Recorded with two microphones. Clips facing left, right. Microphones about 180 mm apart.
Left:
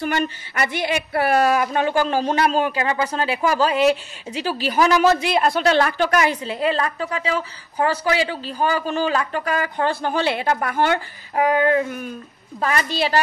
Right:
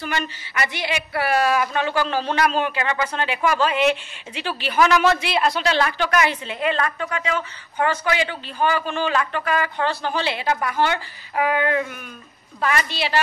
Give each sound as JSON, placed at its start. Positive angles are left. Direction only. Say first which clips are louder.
{"t": 0.0, "sound": "a woman's voice", "louder": "left 5 dB", "side_deg": 50}